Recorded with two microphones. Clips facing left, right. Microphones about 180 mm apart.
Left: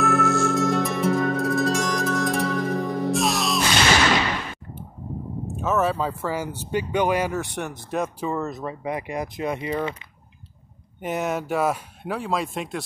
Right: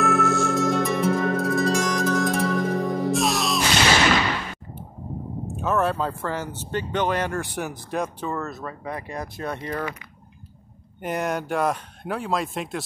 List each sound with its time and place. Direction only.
0.0 s music: centre (ahead or behind)
5.6 s speech: centre (ahead or behind)
8.3 s speech: 15° left (ahead or behind)
11.0 s speech: centre (ahead or behind)